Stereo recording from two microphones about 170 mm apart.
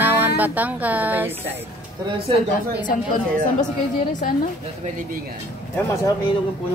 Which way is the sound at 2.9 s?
50° left (ahead or behind).